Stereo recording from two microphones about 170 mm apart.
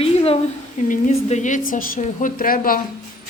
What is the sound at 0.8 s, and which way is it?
A woman's voice, 45° left (ahead or behind).